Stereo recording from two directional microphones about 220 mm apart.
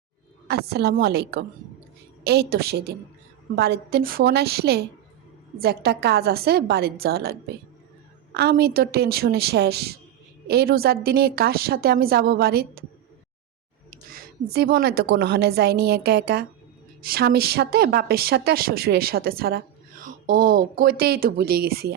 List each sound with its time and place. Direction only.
0.4 s a woman's voice: 45° right (ahead or behind)
13.9 s a woman's voice: 40° right (ahead or behind)